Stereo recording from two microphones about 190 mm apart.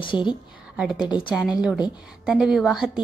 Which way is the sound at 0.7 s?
5° right (ahead or behind).